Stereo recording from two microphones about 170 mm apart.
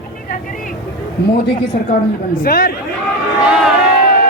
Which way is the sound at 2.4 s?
60° left (ahead or behind).